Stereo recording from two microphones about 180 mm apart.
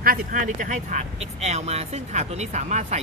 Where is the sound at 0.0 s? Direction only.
50° right (ahead or behind).